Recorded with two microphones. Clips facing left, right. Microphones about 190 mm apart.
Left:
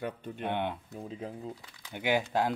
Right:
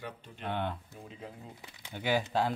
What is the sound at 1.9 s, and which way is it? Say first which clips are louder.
Mantra: left 1 dB; 15° left (ahead or behind).